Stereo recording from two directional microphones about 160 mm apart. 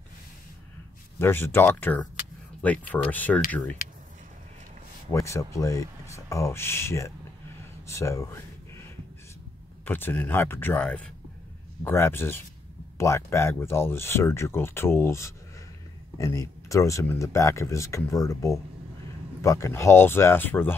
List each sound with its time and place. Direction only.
1.2 s speech: 15° left (ahead or behind)
5.1 s speech: 20° left (ahead or behind)
7.8 s a sound: 15° left (ahead or behind)
9.8 s speech: 10° left (ahead or behind)